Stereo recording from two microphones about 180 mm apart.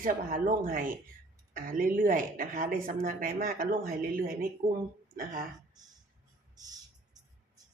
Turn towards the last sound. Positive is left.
turn(degrees=-20)  # may be behind; listen again after turning